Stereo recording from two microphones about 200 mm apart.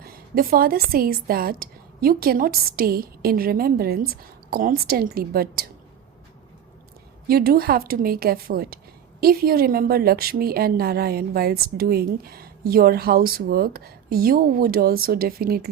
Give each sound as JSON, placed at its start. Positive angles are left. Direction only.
{"t": 0.0, "sound": "a woman's voice", "side_deg": -45}
{"t": 7.3, "sound": "a woman's voice", "side_deg": -50}